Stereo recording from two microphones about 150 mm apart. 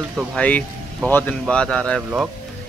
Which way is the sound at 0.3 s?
10° left (ahead or behind).